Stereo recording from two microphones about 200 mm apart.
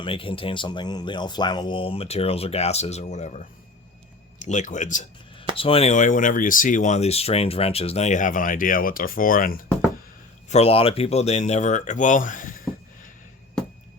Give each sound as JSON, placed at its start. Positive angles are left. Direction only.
{"t": 0.0, "sound": "speech", "side_deg": 25}
{"t": 5.5, "sound": "speech", "side_deg": 30}
{"t": 10.5, "sound": "speech", "side_deg": 30}